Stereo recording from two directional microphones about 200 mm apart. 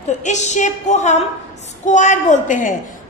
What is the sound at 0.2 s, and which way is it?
A woman's voice, 35° left (ahead or behind).